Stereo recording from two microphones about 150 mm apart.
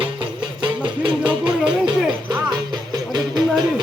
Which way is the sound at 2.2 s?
30° right (ahead or behind).